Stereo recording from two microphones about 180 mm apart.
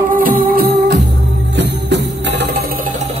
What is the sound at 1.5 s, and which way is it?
Music, 75° right (ahead or behind).